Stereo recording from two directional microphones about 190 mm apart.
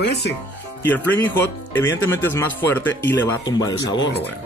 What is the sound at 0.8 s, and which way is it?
Speech, 10° left (ahead or behind).